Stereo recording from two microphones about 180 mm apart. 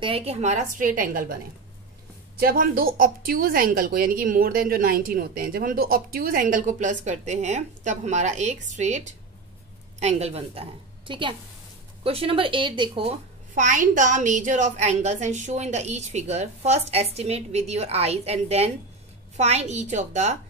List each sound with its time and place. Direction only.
0.0 s speech: 35° right (ahead or behind); by 1.4 s 50° right (ahead or behind)
2.4 s a woman's voice: 55° right (ahead or behind); by 13.1 s 25° right (ahead or behind)
13.6 s a woman's voice: 45° right (ahead or behind)